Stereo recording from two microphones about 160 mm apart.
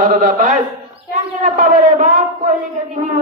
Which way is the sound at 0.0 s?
55° right (ahead or behind).